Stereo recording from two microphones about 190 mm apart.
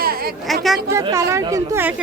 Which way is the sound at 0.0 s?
55° right (ahead or behind).